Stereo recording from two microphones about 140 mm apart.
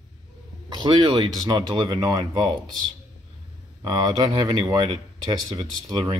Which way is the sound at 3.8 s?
35° right (ahead or behind).